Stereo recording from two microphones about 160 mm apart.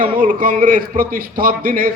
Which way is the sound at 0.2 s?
60° right (ahead or behind).